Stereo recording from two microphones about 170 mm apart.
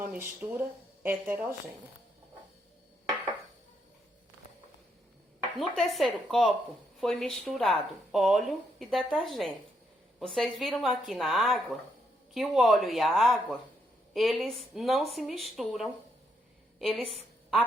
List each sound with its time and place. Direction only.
0.1 s speech: 10° right (ahead or behind)
5.5 s speech: centre (ahead or behind)
16.7 s a sound: centre (ahead or behind)